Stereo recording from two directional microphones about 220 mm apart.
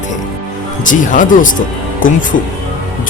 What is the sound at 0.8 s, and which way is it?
Speech, 35° left (ahead or behind).